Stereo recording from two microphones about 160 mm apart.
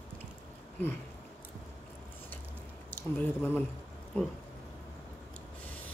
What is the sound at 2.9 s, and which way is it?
Speech, 10° left (ahead or behind).